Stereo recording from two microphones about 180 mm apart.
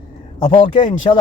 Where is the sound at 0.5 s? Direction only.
40° left (ahead or behind).